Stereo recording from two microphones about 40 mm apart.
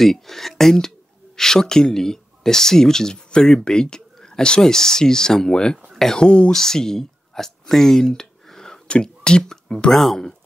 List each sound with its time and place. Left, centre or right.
0.0 s speech: centre; by 6.5 s left
6.5 s speech: centre